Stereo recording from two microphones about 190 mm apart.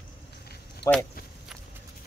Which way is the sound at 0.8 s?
65° left (ahead or behind).